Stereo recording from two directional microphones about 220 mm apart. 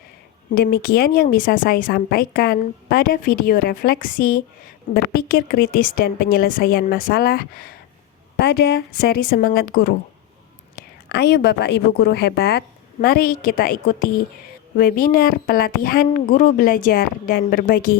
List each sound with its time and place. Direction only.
0.5 s a woman's voice: 45° left (ahead or behind)